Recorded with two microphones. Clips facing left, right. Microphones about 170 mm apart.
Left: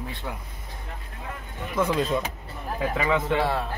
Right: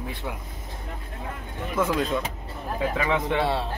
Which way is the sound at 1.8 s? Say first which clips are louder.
Even; centre (ahead or behind).